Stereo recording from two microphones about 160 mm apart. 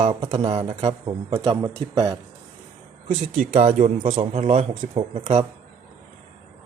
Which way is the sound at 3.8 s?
40° right (ahead or behind).